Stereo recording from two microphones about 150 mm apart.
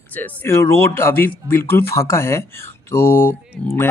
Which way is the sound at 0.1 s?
10° left (ahead or behind).